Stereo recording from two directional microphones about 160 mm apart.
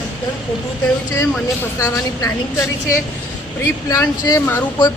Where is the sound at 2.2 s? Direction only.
20° left (ahead or behind).